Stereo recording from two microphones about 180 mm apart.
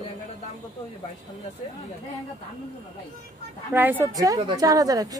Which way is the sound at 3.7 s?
10° right (ahead or behind).